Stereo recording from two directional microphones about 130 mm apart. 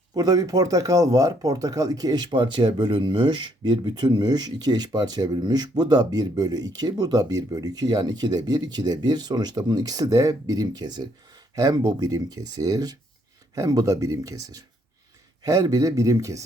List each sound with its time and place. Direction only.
0.1 s speech: 30° right (ahead or behind)